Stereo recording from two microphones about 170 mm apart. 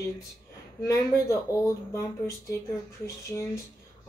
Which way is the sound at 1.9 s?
15° left (ahead or behind).